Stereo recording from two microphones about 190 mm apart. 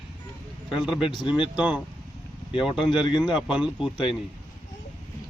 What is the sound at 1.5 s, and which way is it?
Speech, 5° right (ahead or behind).